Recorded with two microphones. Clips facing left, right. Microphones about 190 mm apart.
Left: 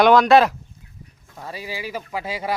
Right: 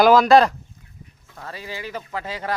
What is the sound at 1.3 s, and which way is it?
Speech, 10° left (ahead or behind).